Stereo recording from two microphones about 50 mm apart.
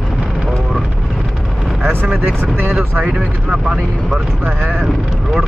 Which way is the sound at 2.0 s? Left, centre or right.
Right.